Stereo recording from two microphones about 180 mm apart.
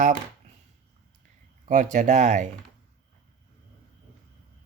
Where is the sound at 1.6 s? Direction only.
45° right (ahead or behind).